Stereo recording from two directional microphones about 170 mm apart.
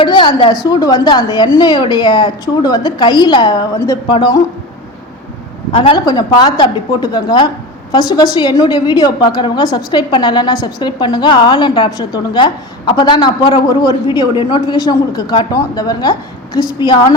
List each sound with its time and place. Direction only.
0.0 s a woman's voice: 30° left (ahead or behind)
5.7 s a woman's voice: 35° left (ahead or behind)